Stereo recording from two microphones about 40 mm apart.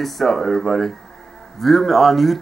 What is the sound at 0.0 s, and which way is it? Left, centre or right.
Speech, centre.